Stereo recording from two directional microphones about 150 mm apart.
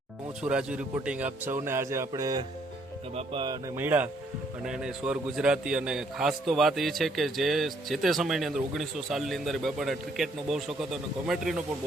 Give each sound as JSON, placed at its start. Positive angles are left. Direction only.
{"t": 0.4, "sound": "a man's voice", "side_deg": -5}
{"t": 3.8, "sound": "a man's voice", "side_deg": -15}